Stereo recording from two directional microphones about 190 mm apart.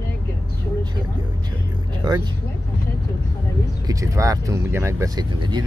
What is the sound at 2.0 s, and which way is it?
Speech, 20° right (ahead or behind).